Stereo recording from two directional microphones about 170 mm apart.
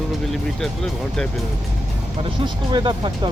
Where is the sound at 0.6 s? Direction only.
5° left (ahead or behind).